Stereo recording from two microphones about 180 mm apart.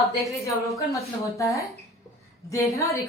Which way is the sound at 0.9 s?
15° left (ahead or behind).